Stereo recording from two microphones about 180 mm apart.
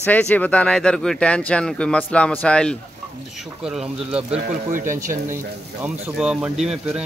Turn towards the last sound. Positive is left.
turn(degrees=0)  # may be behind; listen again after turning